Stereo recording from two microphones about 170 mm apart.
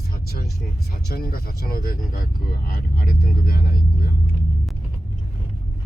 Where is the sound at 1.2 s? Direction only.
60° left (ahead or behind).